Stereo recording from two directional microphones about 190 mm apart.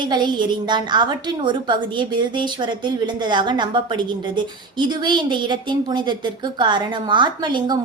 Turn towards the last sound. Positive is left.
turn(degrees=-25)  # may be behind; listen again after turning